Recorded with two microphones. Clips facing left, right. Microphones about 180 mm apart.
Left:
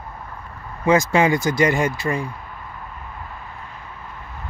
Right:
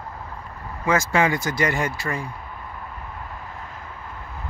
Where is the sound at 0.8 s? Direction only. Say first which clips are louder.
Left 4 dB; 20° left (ahead or behind).